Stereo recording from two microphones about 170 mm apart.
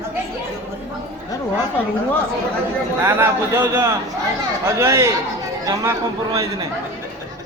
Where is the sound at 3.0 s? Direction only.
15° right (ahead or behind).